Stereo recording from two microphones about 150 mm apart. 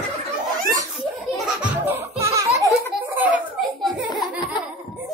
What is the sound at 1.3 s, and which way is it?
Music, 10° right (ahead or behind).